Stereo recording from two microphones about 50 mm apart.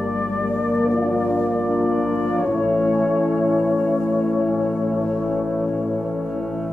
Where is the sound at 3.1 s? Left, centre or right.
Centre.